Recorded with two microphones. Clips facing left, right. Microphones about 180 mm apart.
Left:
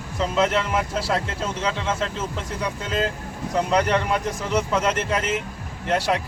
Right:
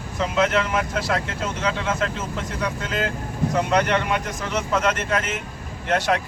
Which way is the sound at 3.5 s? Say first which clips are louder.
Left 1 dB; 35° left (ahead or behind).